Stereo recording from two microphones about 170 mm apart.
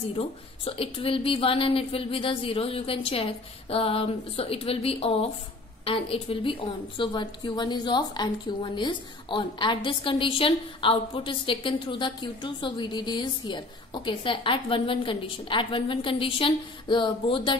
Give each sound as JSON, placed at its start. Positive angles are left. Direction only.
{"t": 0.1, "sound": "a woman's voice", "side_deg": 35}